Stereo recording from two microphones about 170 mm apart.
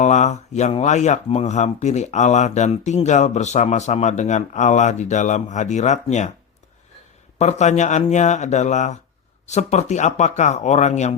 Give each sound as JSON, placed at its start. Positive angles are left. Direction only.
{"t": 0.0, "sound": "speech", "side_deg": 45}
{"t": 7.3, "sound": "speech", "side_deg": 40}